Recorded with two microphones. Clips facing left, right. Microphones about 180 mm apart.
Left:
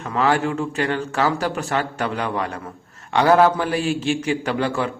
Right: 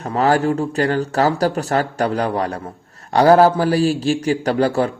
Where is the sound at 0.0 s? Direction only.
40° right (ahead or behind).